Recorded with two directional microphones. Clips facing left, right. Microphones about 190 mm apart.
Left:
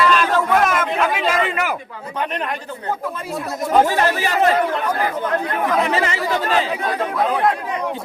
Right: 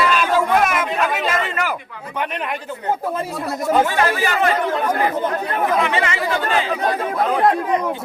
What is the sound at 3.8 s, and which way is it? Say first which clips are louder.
Speech: even; 35° left (ahead or behind).